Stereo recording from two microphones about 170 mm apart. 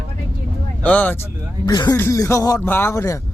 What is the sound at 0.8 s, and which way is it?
Speech, 10° left (ahead or behind).